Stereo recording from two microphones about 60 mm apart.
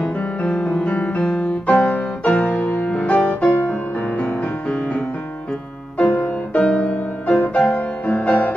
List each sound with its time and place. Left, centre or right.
0.0 s music: centre
6.6 s music: centre